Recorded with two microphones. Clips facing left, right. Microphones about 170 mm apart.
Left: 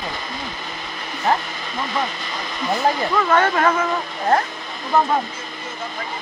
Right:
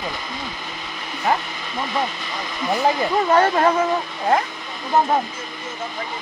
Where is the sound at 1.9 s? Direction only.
10° right (ahead or behind).